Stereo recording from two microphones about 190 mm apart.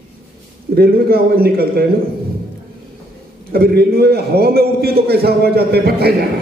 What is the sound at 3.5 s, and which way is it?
A man's voice, 55° right (ahead or behind).